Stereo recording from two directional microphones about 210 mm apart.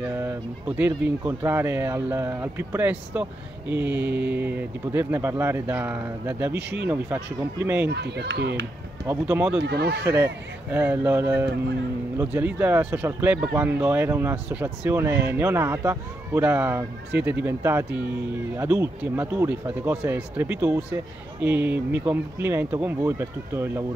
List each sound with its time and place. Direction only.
0.2 s speech: 10° right (ahead or behind)
7.9 s speech: 50° right (ahead or behind)
9.0 s speech: 10° right (ahead or behind)
9.6 s speech: 50° right (ahead or behind)
10.1 s speech: 10° right (ahead or behind)